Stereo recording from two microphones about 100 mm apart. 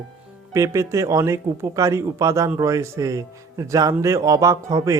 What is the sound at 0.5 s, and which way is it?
A man's voice, 30° right (ahead or behind).